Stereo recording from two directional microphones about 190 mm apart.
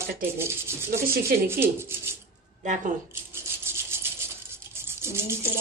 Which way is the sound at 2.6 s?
40° right (ahead or behind).